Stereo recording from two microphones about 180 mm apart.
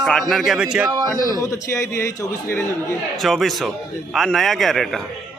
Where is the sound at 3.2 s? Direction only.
Centre (ahead or behind).